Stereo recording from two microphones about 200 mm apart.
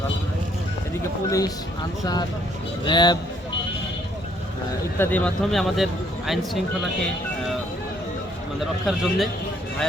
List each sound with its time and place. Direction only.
1.3 s speech: 15° left (ahead or behind)
2.8 s a man's voice: 20° left (ahead or behind)
4.9 s speech: 5° left (ahead or behind)
8.9 s speech: centre (ahead or behind)